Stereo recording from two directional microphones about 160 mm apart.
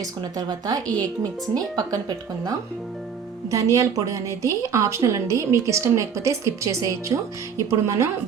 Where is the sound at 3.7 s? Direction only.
20° right (ahead or behind).